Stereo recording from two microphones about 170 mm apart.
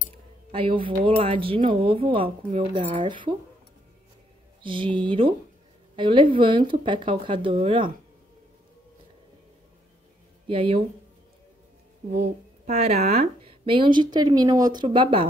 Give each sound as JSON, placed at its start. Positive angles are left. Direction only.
{"t": 0.5, "sound": "speech", "side_deg": -30}
{"t": 4.6, "sound": "speech", "side_deg": -30}
{"t": 10.5, "sound": "speech", "side_deg": -30}
{"t": 12.6, "sound": "speech", "side_deg": -40}